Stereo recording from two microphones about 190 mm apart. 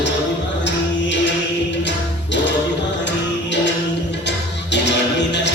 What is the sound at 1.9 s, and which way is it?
Music, 70° left (ahead or behind).